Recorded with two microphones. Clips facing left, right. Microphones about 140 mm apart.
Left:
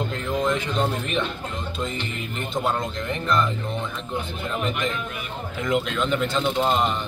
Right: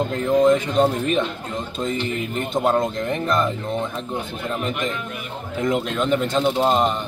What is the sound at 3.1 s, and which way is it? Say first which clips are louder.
Speech: right 2 dB; 45° right (ahead or behind).